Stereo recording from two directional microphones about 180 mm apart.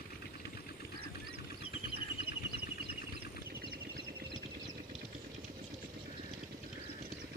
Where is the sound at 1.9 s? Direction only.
60° right (ahead or behind).